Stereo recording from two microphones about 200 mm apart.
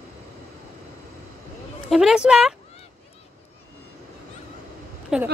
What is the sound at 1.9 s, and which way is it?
Speech, centre (ahead or behind).